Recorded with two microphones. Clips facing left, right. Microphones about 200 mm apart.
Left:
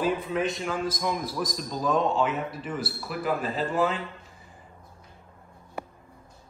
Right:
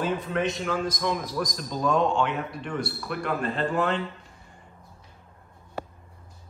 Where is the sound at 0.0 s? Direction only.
Centre (ahead or behind).